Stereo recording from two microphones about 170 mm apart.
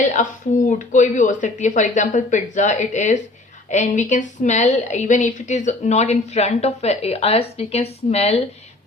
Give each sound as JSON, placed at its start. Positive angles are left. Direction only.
{"t": 0.0, "sound": "a woman's voice", "side_deg": 45}